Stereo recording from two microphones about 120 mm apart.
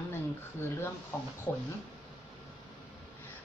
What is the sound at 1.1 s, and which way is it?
Speech, 20° left (ahead or behind).